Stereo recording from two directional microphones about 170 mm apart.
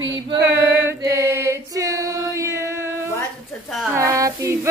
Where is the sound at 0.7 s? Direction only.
15° right (ahead or behind).